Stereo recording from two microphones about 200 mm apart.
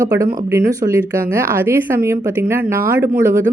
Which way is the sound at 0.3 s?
15° right (ahead or behind).